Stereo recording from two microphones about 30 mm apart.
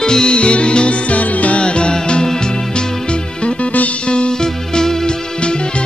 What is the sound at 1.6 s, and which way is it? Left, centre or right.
Music, left.